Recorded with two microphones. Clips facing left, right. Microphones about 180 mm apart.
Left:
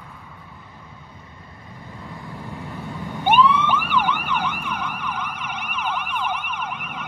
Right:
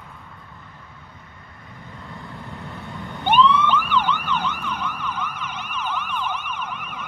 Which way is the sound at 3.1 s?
10° left (ahead or behind).